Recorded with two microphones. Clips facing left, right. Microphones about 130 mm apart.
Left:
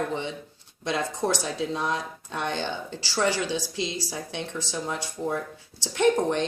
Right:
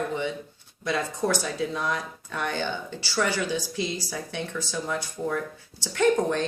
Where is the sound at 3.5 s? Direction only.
90° left.